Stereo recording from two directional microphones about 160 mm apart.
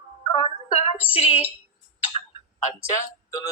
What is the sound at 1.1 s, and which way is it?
Speech, 40° left (ahead or behind).